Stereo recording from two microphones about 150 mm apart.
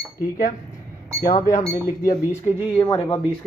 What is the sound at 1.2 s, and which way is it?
Speech, 55° left (ahead or behind).